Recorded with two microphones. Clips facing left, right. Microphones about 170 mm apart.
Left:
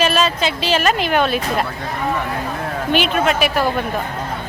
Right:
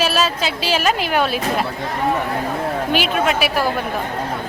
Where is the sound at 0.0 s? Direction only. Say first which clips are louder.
Left 2 dB; 5° right (ahead or behind).